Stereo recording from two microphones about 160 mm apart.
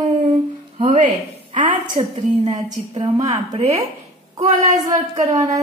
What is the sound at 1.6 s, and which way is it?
A woman's voice, 40° right (ahead or behind).